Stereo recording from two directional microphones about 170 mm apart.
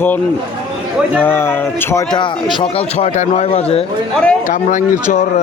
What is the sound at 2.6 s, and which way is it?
Speech, 35° left (ahead or behind).